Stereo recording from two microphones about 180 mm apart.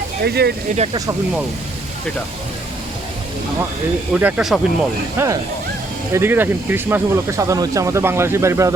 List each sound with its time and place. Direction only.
0.2 s speech: 65° right (ahead or behind)
4.1 s speech: 5° right (ahead or behind)
5.1 s speech: 15° right (ahead or behind)